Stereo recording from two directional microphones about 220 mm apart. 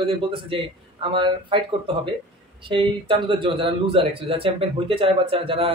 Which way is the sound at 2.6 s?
25° right (ahead or behind).